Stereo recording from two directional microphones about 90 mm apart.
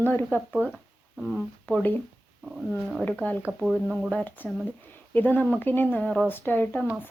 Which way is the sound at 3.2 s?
15° left (ahead or behind).